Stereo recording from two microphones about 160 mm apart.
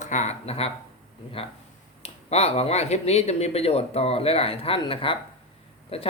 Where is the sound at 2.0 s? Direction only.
40° left (ahead or behind).